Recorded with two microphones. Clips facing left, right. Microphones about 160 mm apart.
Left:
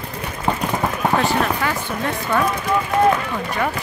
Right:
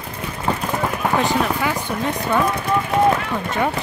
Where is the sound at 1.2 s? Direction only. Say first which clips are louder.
Even; 20° right (ahead or behind).